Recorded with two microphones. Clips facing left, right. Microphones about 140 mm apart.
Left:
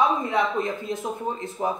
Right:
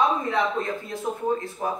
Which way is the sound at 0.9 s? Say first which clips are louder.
Right 2 dB; 20° left (ahead or behind).